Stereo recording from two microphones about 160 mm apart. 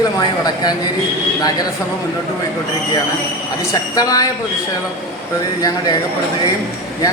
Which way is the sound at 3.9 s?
20° left (ahead or behind).